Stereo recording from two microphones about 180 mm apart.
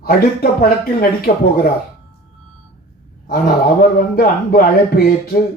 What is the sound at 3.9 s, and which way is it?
Speech, 55° left (ahead or behind).